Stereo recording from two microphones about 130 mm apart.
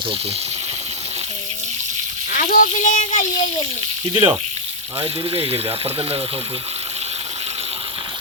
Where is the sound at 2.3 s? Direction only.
90° left; by 3.2 s 75° left (ahead or behind).